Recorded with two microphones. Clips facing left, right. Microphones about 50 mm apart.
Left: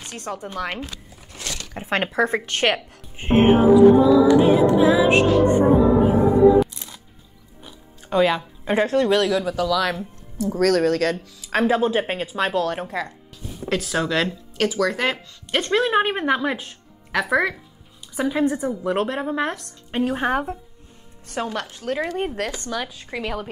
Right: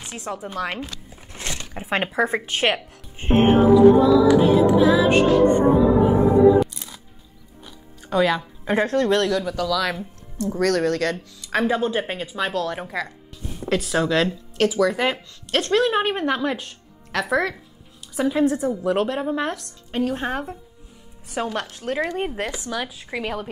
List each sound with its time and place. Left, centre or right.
0.0 s speech: centre
1.1 s a sound: right
1.7 s speech: centre
3.2 s music: centre
4.7 s music: centre
7.6 s speech: centre
15.7 s a woman's voice: centre
19.4 s speech: left
21.3 s speech: centre